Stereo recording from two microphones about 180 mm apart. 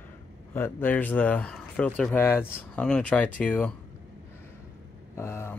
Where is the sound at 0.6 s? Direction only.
10° left (ahead or behind).